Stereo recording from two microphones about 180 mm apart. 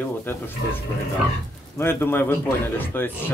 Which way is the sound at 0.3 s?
10° left (ahead or behind).